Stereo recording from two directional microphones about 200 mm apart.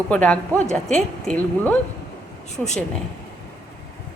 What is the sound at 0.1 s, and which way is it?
A woman's voice, 5° left (ahead or behind).